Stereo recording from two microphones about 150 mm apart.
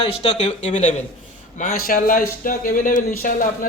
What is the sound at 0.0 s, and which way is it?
Speech, 40° left (ahead or behind).